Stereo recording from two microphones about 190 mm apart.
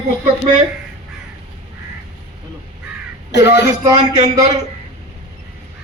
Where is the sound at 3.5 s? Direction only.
20° right (ahead or behind).